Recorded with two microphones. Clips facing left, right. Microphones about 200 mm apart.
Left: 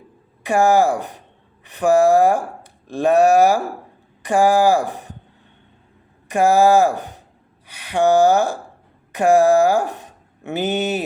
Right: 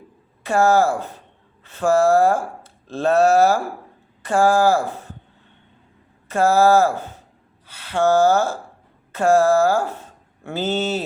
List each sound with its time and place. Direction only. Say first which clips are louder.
0.4 s speech: left 1 dB; 15° left (ahead or behind)
6.2 s speech: left 1 dB; 15° left (ahead or behind)